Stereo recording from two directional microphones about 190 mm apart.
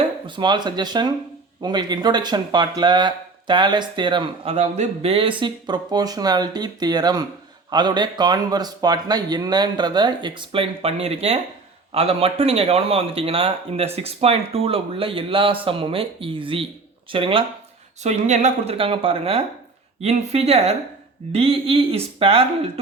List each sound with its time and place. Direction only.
0.3 s a man's voice: 25° right (ahead or behind)
18.0 s a man's voice: 40° right (ahead or behind)